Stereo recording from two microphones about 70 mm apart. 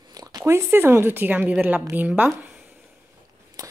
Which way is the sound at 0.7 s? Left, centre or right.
Right.